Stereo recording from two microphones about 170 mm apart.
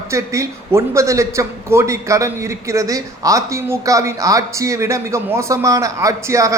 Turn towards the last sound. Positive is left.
turn(degrees=-20)  # may be behind; listen again after turning